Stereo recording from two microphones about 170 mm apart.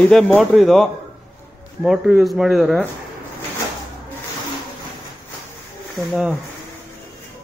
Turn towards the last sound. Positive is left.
turn(degrees=-5)  # may be behind; listen again after turning